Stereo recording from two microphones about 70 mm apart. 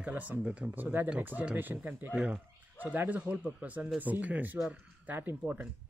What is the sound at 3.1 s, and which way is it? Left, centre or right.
Speech, right.